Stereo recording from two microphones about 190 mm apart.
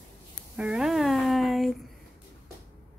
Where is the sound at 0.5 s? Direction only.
5° right (ahead or behind).